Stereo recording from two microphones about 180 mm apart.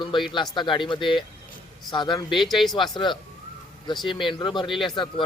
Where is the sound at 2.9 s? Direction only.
25° left (ahead or behind).